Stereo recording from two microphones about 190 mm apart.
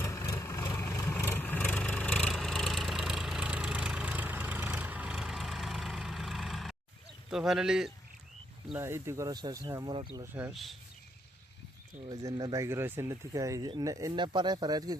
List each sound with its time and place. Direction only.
0.0 s vehicle: 15° left (ahead or behind); by 6.7 s centre (ahead or behind)
7.3 s a man's voice: centre (ahead or behind)
8.7 s speech: 15° right (ahead or behind)
10.3 s a man's voice: 5° right (ahead or behind)
12.0 s speech: 20° right (ahead or behind)